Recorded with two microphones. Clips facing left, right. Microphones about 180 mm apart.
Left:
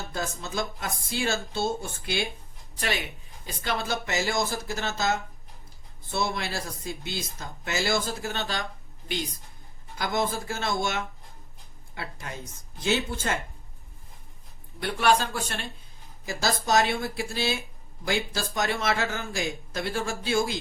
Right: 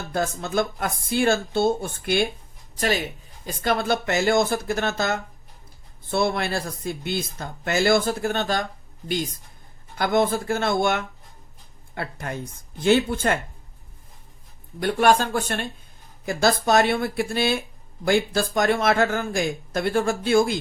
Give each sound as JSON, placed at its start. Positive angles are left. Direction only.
{"t": 0.1, "sound": "speech", "side_deg": -55}
{"t": 2.7, "sound": "speech", "side_deg": -40}
{"t": 10.0, "sound": "speech", "side_deg": -60}
{"t": 14.8, "sound": "speech", "side_deg": -45}